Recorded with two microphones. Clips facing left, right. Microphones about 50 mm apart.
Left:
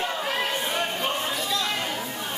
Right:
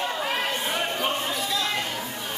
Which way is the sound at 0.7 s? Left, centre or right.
Centre.